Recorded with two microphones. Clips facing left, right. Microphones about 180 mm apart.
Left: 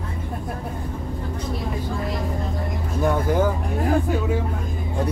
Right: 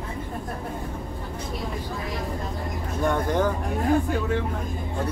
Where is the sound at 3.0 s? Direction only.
5° left (ahead or behind).